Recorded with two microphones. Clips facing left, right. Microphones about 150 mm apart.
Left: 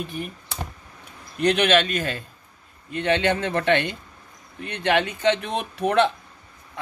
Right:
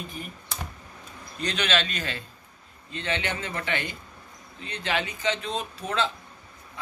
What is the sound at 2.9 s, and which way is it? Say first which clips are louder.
A man's voice: left 9 dB; 60° left (ahead or behind).